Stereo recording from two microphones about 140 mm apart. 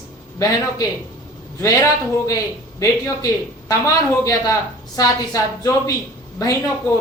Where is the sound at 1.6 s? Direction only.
20° left (ahead or behind).